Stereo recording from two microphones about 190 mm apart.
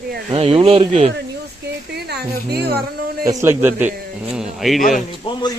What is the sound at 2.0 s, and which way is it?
Speech, 60° right (ahead or behind).